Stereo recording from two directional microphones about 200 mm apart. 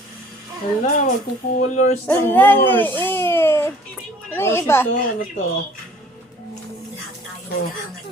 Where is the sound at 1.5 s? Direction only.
40° left (ahead or behind).